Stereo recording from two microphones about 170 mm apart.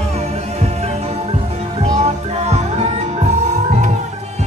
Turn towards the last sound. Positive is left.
turn(degrees=-45)  # may be behind; listen again after turning